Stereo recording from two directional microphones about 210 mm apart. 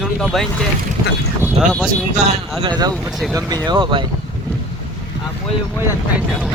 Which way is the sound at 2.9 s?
Centre (ahead or behind).